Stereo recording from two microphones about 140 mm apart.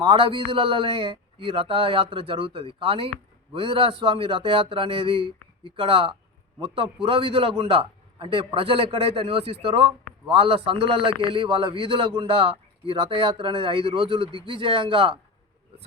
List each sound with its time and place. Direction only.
0.0 s a man's voice: 40° right (ahead or behind)